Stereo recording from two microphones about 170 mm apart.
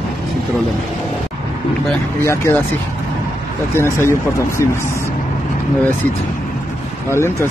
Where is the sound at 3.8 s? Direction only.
15° left (ahead or behind).